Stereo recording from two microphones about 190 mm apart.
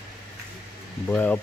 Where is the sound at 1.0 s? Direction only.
10° left (ahead or behind).